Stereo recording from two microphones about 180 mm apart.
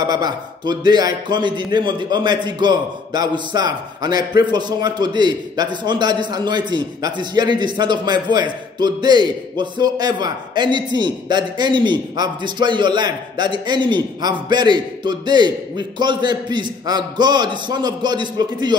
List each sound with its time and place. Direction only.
0.0 s a man's voice: 20° right (ahead or behind)